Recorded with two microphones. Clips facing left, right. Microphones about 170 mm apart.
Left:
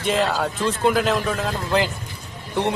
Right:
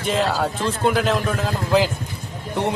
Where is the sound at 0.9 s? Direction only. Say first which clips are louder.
Even; centre (ahead or behind).